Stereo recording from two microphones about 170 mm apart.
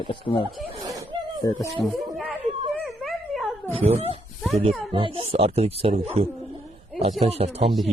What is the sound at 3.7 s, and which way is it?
Speech, 35° right (ahead or behind).